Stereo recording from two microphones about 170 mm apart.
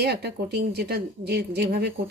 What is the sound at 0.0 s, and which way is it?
Speech, 75° right (ahead or behind).